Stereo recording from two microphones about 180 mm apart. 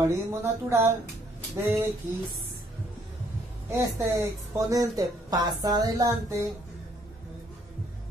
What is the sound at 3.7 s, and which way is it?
Speech, 15° right (ahead or behind).